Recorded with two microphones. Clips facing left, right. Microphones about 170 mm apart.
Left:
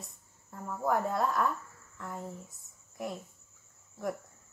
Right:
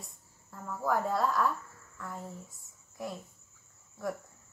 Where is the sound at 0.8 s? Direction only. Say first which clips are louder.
Even; 20° left (ahead or behind).